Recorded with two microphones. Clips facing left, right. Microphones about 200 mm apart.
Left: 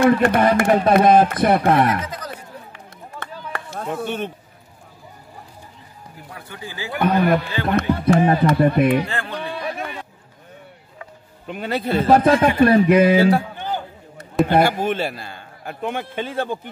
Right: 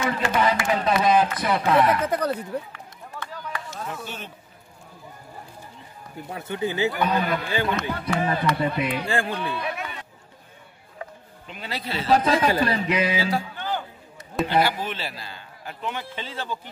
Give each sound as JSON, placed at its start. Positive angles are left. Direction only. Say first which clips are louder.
{"t": 0.0, "sound": "speech", "louder": "left 8 dB", "side_deg": 55}
{"t": 2.0, "sound": "chatter", "louder": "right 8 dB", "side_deg": -60}
{"t": 3.2, "sound": "chop", "louder": "left 2 dB", "side_deg": 60}
{"t": 6.3, "sound": "speech", "louder": "right 9 dB", "side_deg": -20}
{"t": 6.9, "sound": "a man's voice", "louder": "left 6 dB", "side_deg": 55}
{"t": 9.6, "sound": "a sound", "louder": "left 3 dB", "side_deg": 50}
{"t": 11.4, "sound": "a man's voice", "louder": "left 9 dB", "side_deg": 55}